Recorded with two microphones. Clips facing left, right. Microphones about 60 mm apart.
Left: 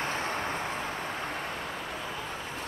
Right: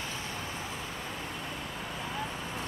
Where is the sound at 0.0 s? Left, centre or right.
Left.